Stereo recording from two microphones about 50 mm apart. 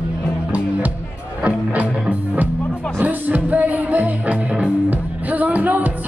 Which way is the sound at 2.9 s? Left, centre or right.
Right.